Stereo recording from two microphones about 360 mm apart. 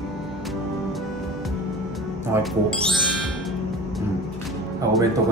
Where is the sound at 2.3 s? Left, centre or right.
Centre.